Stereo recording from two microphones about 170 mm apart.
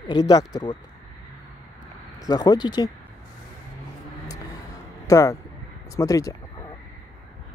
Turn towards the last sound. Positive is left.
turn(degrees=20)  # may be behind; listen again after turning